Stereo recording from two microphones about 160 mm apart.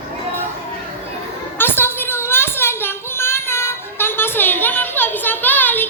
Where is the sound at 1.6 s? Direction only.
15° left (ahead or behind).